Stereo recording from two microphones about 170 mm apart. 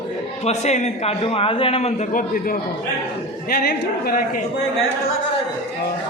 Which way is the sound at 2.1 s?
55° left (ahead or behind).